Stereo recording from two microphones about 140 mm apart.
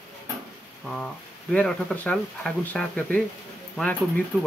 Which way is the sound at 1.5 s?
10° left (ahead or behind).